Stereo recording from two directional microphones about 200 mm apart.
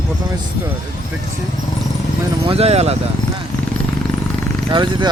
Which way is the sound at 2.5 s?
30° right (ahead or behind).